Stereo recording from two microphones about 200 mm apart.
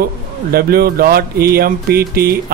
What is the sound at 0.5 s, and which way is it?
Speech, 50° right (ahead or behind).